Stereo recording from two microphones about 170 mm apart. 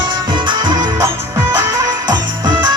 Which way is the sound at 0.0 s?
30° right (ahead or behind).